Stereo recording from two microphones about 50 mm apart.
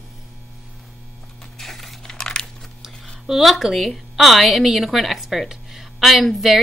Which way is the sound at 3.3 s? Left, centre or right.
Centre.